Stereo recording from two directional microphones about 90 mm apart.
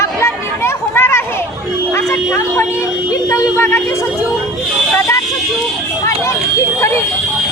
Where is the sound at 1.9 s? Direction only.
30° left (ahead or behind).